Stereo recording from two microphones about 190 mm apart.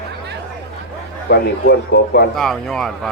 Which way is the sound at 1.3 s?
60° left (ahead or behind).